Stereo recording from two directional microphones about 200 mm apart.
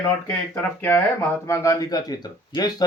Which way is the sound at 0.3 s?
10° left (ahead or behind).